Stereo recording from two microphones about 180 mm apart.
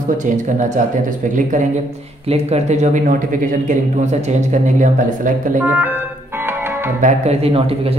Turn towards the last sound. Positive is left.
turn(degrees=-35)  # may be behind; listen again after turning